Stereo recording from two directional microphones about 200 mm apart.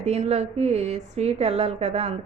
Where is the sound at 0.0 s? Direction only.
35° right (ahead or behind).